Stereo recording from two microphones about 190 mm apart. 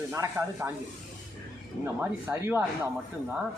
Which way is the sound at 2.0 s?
10° right (ahead or behind).